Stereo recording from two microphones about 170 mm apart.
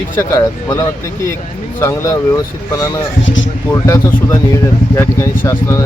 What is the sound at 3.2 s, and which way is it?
Speech, 90° left.